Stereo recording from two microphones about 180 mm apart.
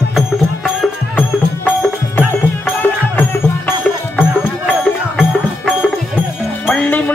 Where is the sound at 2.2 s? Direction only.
10° left (ahead or behind).